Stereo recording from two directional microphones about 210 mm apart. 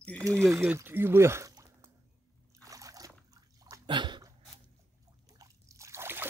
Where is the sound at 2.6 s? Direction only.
15° right (ahead or behind).